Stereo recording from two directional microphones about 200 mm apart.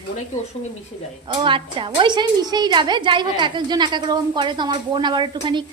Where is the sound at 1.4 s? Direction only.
25° right (ahead or behind).